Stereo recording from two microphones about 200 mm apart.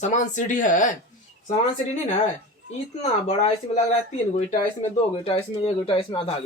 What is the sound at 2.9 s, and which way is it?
Speech, 35° left (ahead or behind).